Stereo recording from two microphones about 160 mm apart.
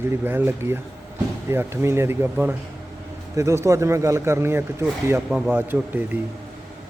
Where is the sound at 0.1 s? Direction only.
15° right (ahead or behind).